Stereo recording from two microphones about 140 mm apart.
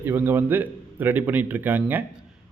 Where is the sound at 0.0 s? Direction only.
15° right (ahead or behind).